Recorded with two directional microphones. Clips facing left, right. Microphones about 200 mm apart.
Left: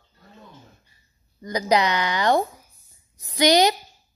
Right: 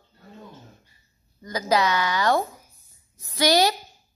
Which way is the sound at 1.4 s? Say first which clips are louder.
Left 2 dB; 20° left (ahead or behind).